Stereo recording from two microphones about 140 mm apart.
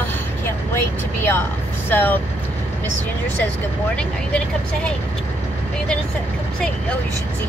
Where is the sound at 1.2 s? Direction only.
15° left (ahead or behind).